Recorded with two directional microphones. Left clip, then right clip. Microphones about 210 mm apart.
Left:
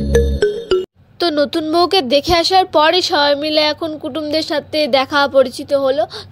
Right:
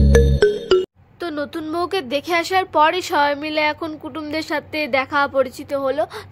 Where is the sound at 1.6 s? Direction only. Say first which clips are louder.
Left 6 dB; 15° left (ahead or behind).